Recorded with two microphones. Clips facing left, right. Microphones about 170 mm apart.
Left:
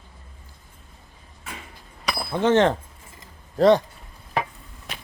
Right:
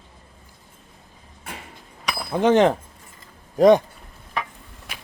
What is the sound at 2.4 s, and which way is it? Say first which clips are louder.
Speech: right 2 dB; 15° right (ahead or behind).